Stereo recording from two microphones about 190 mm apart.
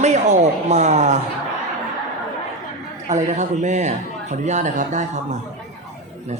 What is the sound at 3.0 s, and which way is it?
Speech, 40° right (ahead or behind).